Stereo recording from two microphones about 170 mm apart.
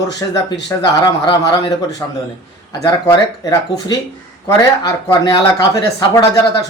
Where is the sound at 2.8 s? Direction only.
20° left (ahead or behind).